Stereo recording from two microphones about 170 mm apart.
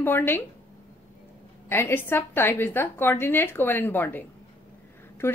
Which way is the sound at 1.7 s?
15° left (ahead or behind).